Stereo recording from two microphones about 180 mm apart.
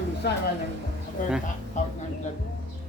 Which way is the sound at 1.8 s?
40° left (ahead or behind).